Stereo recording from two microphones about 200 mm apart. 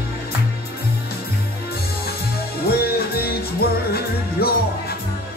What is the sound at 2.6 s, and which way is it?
Music, 50° left (ahead or behind).